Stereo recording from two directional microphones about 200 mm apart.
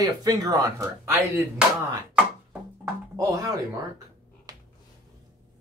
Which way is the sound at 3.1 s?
15° right (ahead or behind).